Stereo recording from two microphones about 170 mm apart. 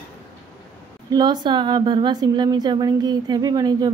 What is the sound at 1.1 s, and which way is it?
A woman's voice, 25° right (ahead or behind).